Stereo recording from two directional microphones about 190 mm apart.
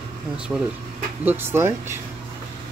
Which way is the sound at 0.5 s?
5° right (ahead or behind).